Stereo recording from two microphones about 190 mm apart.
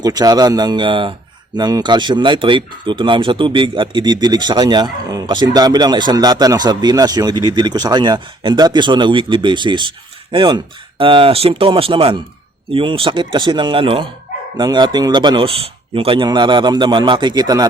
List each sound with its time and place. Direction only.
0.0 s speech: 20° right (ahead or behind)